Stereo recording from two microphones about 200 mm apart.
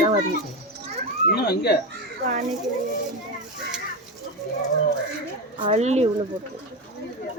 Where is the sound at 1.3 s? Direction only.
55° left (ahead or behind).